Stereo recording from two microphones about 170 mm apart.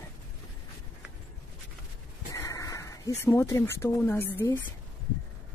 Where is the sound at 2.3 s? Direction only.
20° left (ahead or behind).